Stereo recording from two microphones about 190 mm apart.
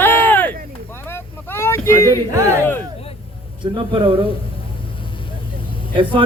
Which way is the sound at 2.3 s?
15° right (ahead or behind).